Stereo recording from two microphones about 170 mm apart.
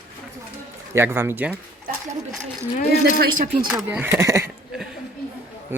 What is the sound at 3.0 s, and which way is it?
Speech, 60° right (ahead or behind).